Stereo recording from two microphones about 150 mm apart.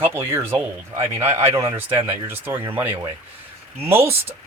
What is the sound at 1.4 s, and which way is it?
Speech, 40° right (ahead or behind).